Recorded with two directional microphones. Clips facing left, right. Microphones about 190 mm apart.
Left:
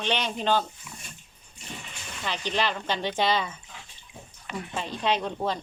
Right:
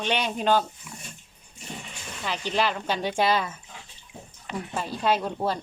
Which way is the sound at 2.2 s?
5° right (ahead or behind).